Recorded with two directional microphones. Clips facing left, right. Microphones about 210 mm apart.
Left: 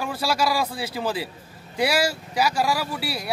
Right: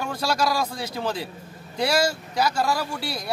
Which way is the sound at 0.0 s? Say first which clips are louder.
Even; 5° left (ahead or behind).